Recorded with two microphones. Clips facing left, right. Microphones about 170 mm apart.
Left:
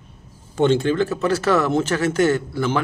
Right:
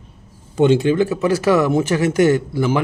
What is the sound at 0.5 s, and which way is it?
A man's voice, 10° right (ahead or behind).